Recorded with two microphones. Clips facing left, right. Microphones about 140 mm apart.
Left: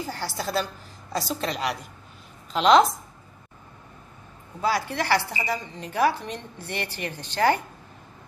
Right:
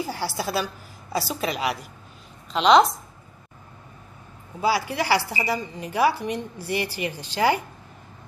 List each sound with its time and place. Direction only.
0.0 s a sound: 10° right (ahead or behind)
0.4 s a woman's voice: 10° right (ahead or behind)
4.6 s a woman's voice: 10° right (ahead or behind)